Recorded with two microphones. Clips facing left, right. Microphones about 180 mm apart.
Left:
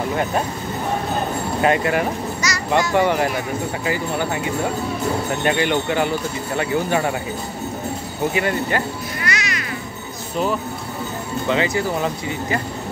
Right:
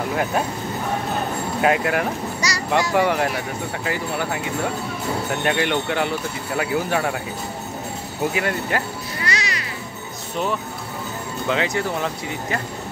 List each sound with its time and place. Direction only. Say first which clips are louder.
0.1 s speech: even; centre (ahead or behind)
1.6 s speech: left 1 dB; centre (ahead or behind)
2.4 s a child's voice: left 1 dB; 35° right (ahead or behind)
2.9 s speech: left 1 dB; centre (ahead or behind)
8.3 s speech: left 3 dB; centre (ahead or behind)
9.2 s music: even; 30° right (ahead or behind)
10.3 s speech: left 3 dB; centre (ahead or behind)